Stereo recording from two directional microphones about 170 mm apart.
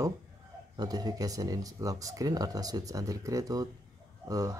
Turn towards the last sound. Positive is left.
turn(degrees=-20)  # may be behind; listen again after turning